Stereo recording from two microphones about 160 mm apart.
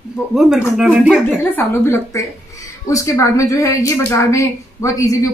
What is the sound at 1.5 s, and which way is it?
A woman's voice, 15° left (ahead or behind).